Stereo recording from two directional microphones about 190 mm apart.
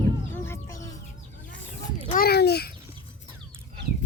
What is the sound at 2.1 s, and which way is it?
Speech, 50° left (ahead or behind).